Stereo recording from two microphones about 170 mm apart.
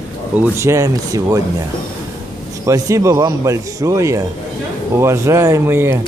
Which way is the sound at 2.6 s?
20° right (ahead or behind).